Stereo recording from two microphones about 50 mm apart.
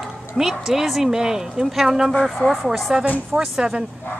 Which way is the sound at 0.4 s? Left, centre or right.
Centre.